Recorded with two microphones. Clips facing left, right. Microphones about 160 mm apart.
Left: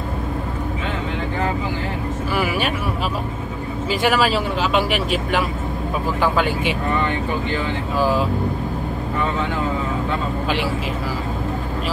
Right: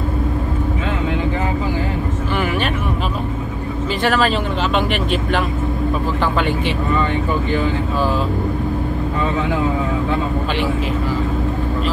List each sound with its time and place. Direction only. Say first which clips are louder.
2.3 s music: right 1 dB; 5° left (ahead or behind)
4.0 s speech: right 1 dB; 5° left (ahead or behind)